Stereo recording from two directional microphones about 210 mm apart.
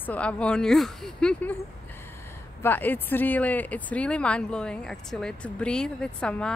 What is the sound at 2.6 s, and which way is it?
Speech, 10° left (ahead or behind).